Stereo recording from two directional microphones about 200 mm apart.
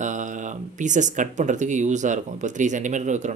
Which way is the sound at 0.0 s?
40° right (ahead or behind).